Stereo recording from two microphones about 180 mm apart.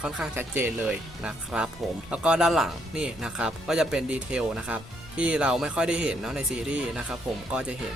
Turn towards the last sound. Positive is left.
turn(degrees=-5)  # may be behind; listen again after turning